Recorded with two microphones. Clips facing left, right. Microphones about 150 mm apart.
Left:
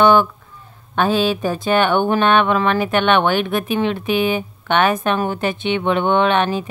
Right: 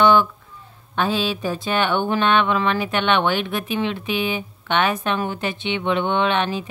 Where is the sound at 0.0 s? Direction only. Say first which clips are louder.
Left 3 dB; 50° left (ahead or behind).